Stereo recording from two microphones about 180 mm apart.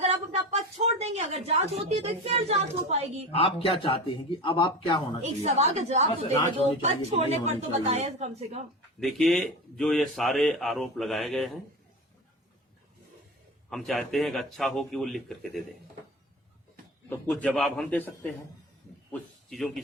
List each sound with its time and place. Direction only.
0.0 s a sound: 35° right (ahead or behind)
3.3 s a man's voice: 30° left (ahead or behind)
5.4 s a woman's voice: 40° right (ahead or behind)
9.0 s a man's voice: centre (ahead or behind)
13.7 s a man's voice: centre (ahead or behind)
17.1 s a man's voice: 15° left (ahead or behind)
17.5 s a man's voice: centre (ahead or behind)